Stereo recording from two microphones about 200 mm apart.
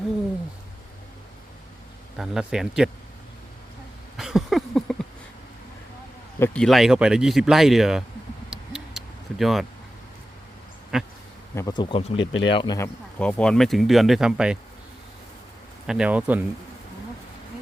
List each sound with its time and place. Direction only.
2.1 s speech: centre (ahead or behind)
4.2 s a sound: centre (ahead or behind)
6.4 s speech: 5° left (ahead or behind)
8.4 s tick-tock: centre (ahead or behind)
10.9 s speech: 5° right (ahead or behind)
11.5 s speech: 20° left (ahead or behind)
12.2 s speech: 75° left (ahead or behind)
12.5 s speech: 25° left (ahead or behind)
13.1 s speech: 5° left (ahead or behind)
15.9 s speech: 5° right (ahead or behind)